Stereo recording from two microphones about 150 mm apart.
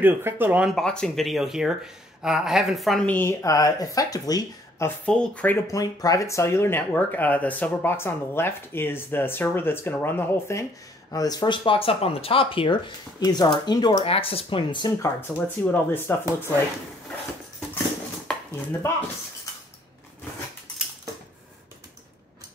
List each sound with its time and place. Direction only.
0.0 s speech: 15° right (ahead or behind)
0.7 s speech: 5° left (ahead or behind)
3.1 s speech: 15° left (ahead or behind)
4.8 s speech: 5° left (ahead or behind)
5.7 s speech: 25° left (ahead or behind)
11.1 s speech: 25° left (ahead or behind)
13.9 s speech: 40° left (ahead or behind)
15.1 s speech: 10° left (ahead or behind)
18.5 s speech: 15° left (ahead or behind)